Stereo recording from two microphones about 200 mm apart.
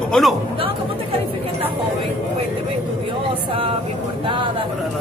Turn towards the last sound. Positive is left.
turn(degrees=-25)  # may be behind; listen again after turning